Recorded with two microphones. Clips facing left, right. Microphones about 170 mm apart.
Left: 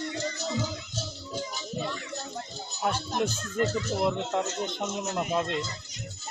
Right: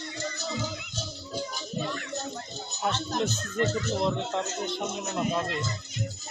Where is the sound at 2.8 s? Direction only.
10° left (ahead or behind).